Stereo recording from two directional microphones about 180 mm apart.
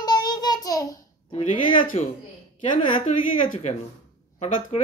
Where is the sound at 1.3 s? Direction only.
25° left (ahead or behind).